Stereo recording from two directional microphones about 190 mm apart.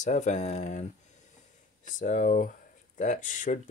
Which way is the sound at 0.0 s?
40° left (ahead or behind).